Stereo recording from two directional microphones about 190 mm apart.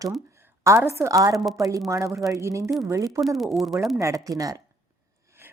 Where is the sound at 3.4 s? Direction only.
Centre (ahead or behind).